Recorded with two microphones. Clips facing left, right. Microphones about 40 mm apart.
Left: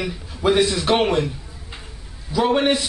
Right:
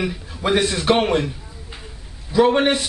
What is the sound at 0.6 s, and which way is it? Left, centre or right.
Speech, right.